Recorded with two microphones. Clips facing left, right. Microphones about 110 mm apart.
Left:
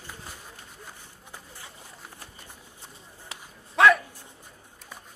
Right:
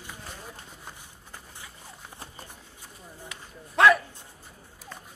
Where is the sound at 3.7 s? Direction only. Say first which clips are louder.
Even; centre (ahead or behind).